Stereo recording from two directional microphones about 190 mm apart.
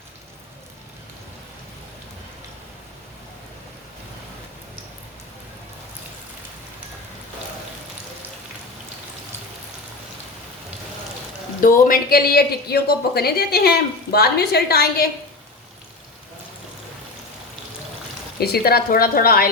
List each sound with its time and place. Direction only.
11.6 s speech: 50° left (ahead or behind)
18.3 s a woman's voice: 55° left (ahead or behind)